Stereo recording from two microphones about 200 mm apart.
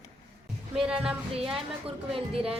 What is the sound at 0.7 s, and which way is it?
Speech, 5° right (ahead or behind).